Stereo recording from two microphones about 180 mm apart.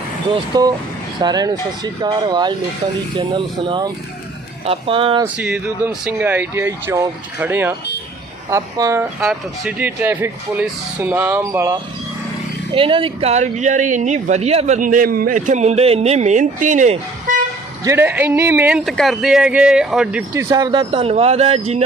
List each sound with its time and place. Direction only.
0.3 s speech: 25° right (ahead or behind)
5.2 s speech: 10° right (ahead or behind)
12.7 s speech: 30° right (ahead or behind)
17.8 s speech: 10° right (ahead or behind)
18.9 s speech: centre (ahead or behind); by 21.8 s 35° right (ahead or behind)